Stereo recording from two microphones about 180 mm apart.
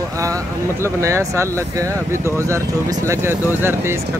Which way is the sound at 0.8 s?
15° right (ahead or behind).